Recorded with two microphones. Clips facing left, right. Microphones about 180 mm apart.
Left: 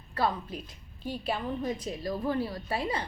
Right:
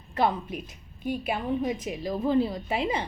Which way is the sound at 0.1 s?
25° right (ahead or behind).